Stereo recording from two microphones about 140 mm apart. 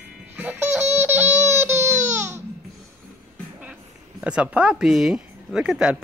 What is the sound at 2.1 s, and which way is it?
Babbling, 15° right (ahead or behind).